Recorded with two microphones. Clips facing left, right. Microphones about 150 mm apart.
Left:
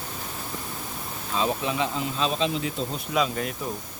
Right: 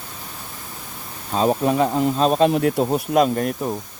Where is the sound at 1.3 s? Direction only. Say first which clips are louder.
Right 8 dB; 45° right (ahead or behind).